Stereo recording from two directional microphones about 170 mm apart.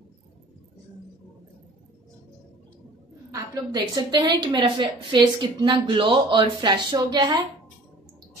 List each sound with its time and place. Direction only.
3.3 s a woman's voice: 20° right (ahead or behind)